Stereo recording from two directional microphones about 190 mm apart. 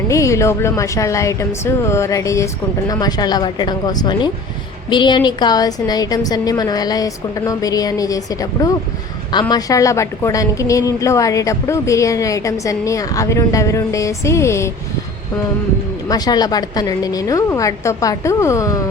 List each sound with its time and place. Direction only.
0.1 s a woman's voice: 15° left (ahead or behind)
16.0 s a woman's voice: 20° left (ahead or behind)